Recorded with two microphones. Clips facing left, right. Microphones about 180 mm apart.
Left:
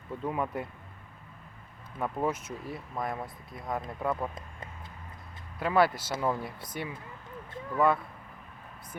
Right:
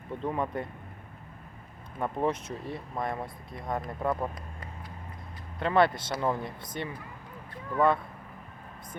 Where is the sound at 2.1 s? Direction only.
5° left (ahead or behind).